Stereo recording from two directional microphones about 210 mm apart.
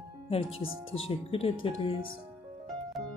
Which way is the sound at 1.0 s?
25° left (ahead or behind).